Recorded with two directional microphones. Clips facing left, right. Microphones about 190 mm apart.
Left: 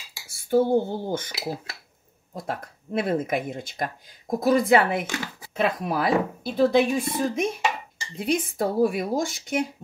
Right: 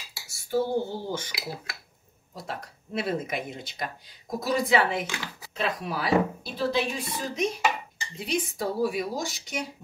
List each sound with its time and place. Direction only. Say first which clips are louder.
0.3 s dishes: left 6 dB; 55° left (ahead or behind)
2.3 s speech: left 5 dB; 50° left (ahead or behind)